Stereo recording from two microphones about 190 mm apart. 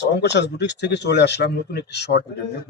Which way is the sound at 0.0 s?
65° left (ahead or behind).